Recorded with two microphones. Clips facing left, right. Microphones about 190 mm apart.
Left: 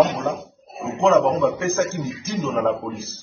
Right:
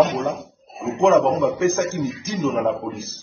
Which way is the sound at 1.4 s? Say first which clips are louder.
Right 1 dB; 15° right (ahead or behind).